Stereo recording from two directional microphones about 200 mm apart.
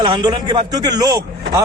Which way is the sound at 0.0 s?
20° right (ahead or behind).